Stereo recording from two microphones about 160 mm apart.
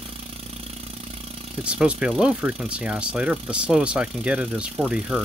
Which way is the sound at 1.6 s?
5° right (ahead or behind).